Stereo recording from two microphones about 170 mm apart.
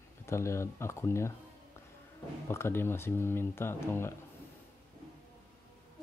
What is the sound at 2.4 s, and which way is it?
Speech, 15° left (ahead or behind).